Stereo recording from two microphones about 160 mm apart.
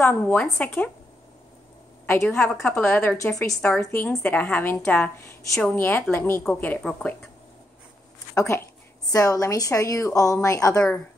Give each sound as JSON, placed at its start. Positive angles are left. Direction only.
{"t": 0.0, "sound": "a woman's voice", "side_deg": 10}
{"t": 2.0, "sound": "a woman's voice", "side_deg": 10}
{"t": 8.4, "sound": "a woman's voice", "side_deg": 20}